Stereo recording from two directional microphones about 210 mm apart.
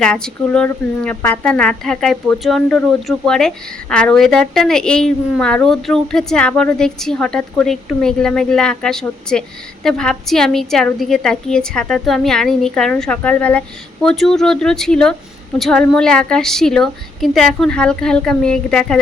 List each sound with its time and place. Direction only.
0.0 s a woman's voice: 5° left (ahead or behind)